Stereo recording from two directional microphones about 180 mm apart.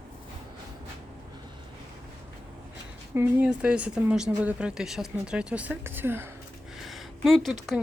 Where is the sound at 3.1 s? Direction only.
5° right (ahead or behind).